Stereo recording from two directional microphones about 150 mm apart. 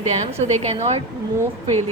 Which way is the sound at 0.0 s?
45° right (ahead or behind).